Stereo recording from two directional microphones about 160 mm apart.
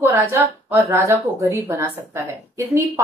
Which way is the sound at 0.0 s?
15° right (ahead or behind).